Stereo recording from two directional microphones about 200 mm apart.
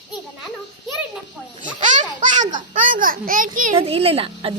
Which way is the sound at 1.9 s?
40° right (ahead or behind).